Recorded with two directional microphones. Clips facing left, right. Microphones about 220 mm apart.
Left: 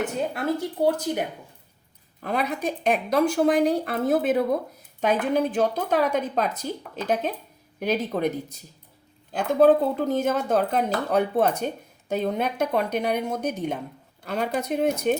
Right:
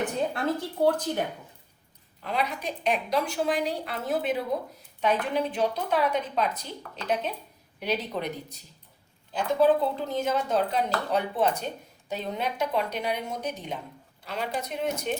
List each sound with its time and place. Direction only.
0.3 s speech: 10° left (ahead or behind)
2.2 s speech: 50° left (ahead or behind)